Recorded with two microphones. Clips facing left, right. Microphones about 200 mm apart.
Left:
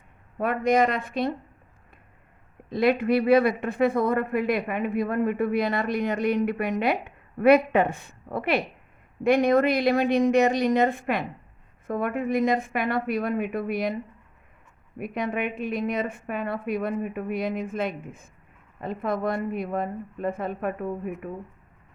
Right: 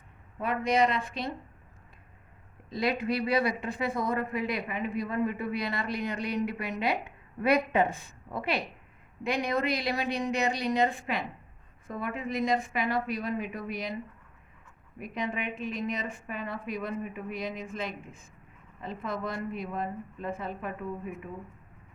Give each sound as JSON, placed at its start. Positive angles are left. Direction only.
{"t": 0.3, "sound": "speech", "side_deg": 55}
{"t": 2.6, "sound": "speech", "side_deg": 55}
{"t": 14.9, "sound": "speech", "side_deg": 60}